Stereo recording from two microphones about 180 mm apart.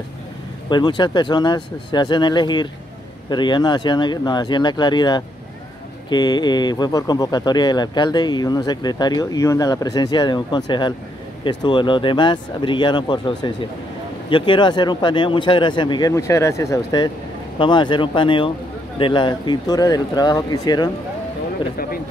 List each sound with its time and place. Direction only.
0.7 s speech: 25° left (ahead or behind)